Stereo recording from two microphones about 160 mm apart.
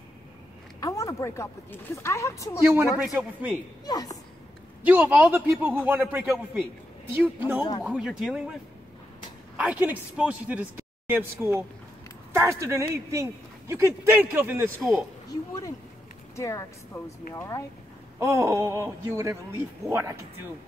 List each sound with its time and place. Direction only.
0.7 s speech: 20° left (ahead or behind)
2.6 s speech: 15° right (ahead or behind)
3.8 s speech: 25° left (ahead or behind)
4.8 s speech: 10° right (ahead or behind)
9.6 s speech: 10° right (ahead or behind)
14.8 s speech: centre (ahead or behind)
16.3 s speech: 20° left (ahead or behind)
18.2 s speech: 15° right (ahead or behind)